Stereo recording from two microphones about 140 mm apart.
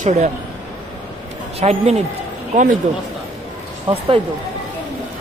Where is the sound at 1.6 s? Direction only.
50° right (ahead or behind).